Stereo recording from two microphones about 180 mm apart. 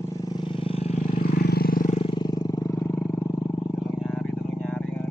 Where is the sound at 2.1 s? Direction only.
25° left (ahead or behind).